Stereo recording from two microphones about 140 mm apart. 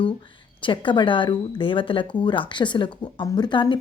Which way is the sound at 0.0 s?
35° left (ahead or behind).